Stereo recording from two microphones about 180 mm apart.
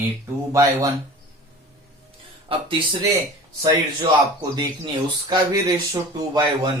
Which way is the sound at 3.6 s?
25° right (ahead or behind).